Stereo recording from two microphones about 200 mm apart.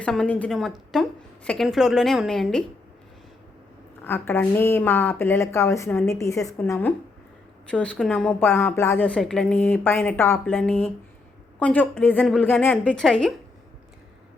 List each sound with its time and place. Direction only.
0.0 s a woman's voice: 5° left (ahead or behind)
4.0 s a woman's voice: 10° left (ahead or behind)